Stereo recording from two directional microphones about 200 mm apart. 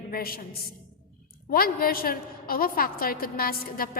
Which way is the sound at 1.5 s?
45° left (ahead or behind).